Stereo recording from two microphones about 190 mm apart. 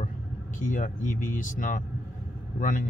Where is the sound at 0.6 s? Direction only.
45° left (ahead or behind).